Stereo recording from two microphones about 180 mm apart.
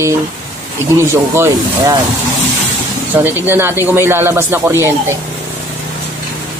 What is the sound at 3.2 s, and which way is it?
Speech, 10° right (ahead or behind).